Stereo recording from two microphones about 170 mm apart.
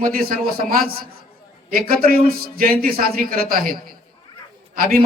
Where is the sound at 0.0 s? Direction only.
60° right (ahead or behind).